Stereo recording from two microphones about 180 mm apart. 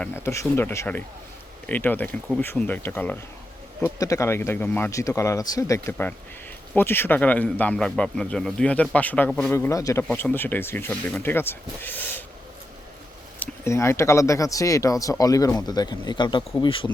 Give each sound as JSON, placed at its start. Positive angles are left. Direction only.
{"t": 0.0, "sound": "speech", "side_deg": 15}
{"t": 13.4, "sound": "speech", "side_deg": 15}